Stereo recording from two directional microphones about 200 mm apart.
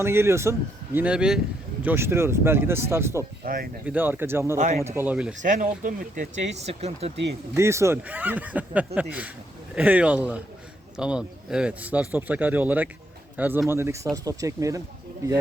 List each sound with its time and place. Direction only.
0.0 s speech: 15° right (ahead or behind)
3.4 s speech: 45° right (ahead or behind)
3.8 s speech: 10° right (ahead or behind)
4.5 s speech: 35° right (ahead or behind)
4.8 s speech: 10° right (ahead or behind)
5.4 s speech: 40° right (ahead or behind)
7.5 s speech: 15° right (ahead or behind)